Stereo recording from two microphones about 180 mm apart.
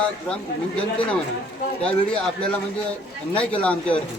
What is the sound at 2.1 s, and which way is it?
Speech, 5° left (ahead or behind).